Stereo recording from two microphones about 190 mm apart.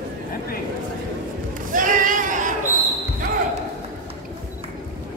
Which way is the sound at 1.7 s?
45° right (ahead or behind).